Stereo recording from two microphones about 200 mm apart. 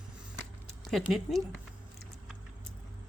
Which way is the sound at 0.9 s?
Centre (ahead or behind).